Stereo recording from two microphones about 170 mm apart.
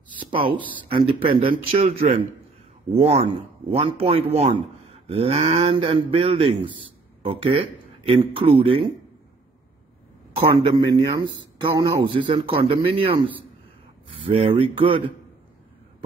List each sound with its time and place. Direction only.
0.8 s speech: 30° right (ahead or behind)
10.6 s speech: 25° right (ahead or behind)
14.2 s speech: 35° right (ahead or behind)